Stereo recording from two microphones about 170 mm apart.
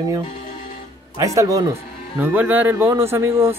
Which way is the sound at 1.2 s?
20° right (ahead or behind).